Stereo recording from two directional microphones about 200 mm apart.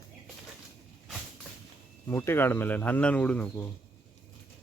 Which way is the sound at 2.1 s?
10° left (ahead or behind).